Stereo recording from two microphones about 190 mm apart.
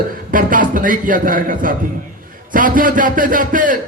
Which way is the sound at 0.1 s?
45° right (ahead or behind).